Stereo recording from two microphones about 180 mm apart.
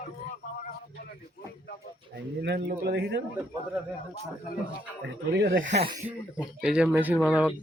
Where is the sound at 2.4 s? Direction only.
60° right (ahead or behind).